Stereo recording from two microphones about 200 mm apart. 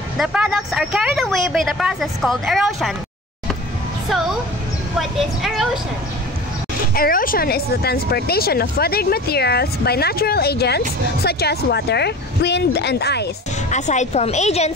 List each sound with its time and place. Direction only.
0.2 s speech: 5° right (ahead or behind)
4.1 s music: centre (ahead or behind)
4.9 s speech: centre (ahead or behind)
6.9 s speech: 45° left (ahead or behind)
13.7 s a woman's voice: 35° left (ahead or behind)